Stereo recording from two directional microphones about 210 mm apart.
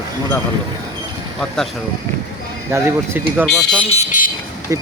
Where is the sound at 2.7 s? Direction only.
10° right (ahead or behind).